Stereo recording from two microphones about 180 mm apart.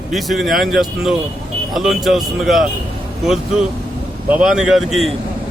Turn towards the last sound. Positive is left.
turn(degrees=0)  # may be behind; listen again after turning